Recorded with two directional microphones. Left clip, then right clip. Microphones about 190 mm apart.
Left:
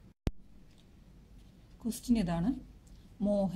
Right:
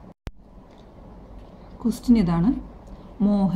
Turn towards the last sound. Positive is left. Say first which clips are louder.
# right 7 dB
turn(degrees=-10)  # may be behind; listen again after turning